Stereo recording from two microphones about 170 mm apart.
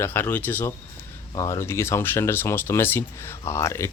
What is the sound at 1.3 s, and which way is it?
Speech, 25° left (ahead or behind).